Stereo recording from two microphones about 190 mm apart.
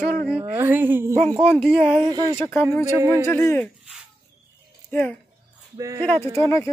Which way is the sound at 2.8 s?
15° right (ahead or behind).